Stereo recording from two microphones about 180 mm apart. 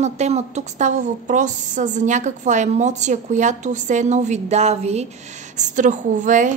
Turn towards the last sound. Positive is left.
turn(degrees=-45)  # may be behind; listen again after turning